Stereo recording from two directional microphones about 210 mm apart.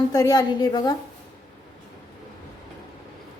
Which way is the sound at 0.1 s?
20° left (ahead or behind).